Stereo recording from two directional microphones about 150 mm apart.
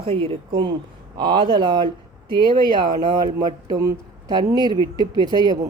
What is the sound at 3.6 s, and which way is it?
A woman's voice, 25° right (ahead or behind).